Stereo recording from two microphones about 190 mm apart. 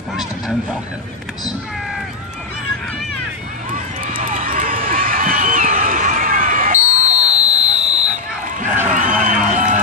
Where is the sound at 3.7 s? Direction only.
45° right (ahead or behind).